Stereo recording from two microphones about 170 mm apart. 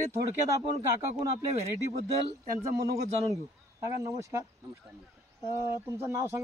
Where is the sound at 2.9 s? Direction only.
20° right (ahead or behind).